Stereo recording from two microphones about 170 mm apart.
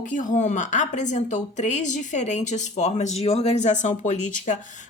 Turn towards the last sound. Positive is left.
turn(degrees=45)  # may be behind; listen again after turning